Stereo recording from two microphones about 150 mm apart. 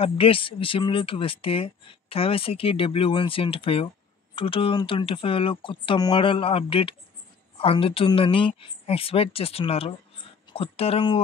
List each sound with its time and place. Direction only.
0.0 s speech: 35° left (ahead or behind)